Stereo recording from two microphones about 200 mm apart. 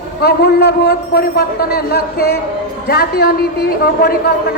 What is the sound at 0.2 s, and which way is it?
A woman's voice, 55° left (ahead or behind).